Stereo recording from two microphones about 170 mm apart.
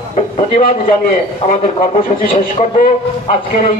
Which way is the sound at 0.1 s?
50° left (ahead or behind).